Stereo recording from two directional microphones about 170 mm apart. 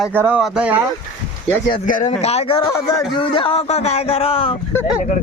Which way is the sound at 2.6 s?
20° left (ahead or behind).